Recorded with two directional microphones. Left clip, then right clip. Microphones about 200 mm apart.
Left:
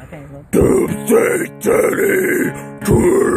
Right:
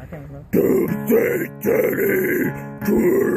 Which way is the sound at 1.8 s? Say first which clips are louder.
Left 5 dB; 20° left (ahead or behind).